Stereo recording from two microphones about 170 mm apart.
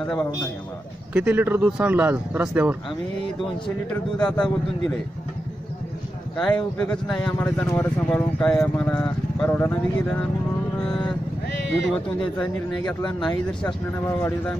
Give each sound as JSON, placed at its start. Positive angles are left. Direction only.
{"t": 1.1, "sound": "speech", "side_deg": -10}
{"t": 3.9, "sound": "speech", "side_deg": 5}
{"t": 6.3, "sound": "speech", "side_deg": 5}
{"t": 10.8, "sound": "vehicle", "side_deg": 5}
{"t": 12.8, "sound": "speech", "side_deg": 25}
{"t": 13.5, "sound": "speech", "side_deg": 5}